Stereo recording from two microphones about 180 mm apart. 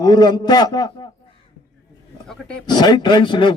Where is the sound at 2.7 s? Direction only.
25° left (ahead or behind).